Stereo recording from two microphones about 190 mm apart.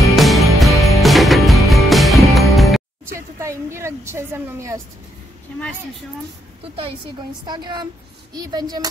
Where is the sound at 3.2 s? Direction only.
15° right (ahead or behind).